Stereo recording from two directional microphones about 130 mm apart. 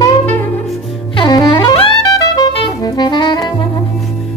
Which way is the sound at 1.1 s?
35° left (ahead or behind).